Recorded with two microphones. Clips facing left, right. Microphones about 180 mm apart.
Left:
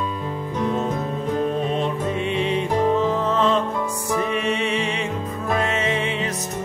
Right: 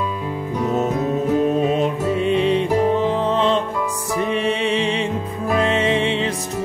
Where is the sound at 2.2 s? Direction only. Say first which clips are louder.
Right 7 dB; 35° right (ahead or behind).